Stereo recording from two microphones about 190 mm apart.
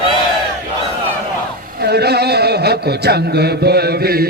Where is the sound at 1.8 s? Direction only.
60° right (ahead or behind).